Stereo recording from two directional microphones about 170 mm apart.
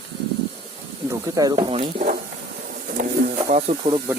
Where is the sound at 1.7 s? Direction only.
45° right (ahead or behind).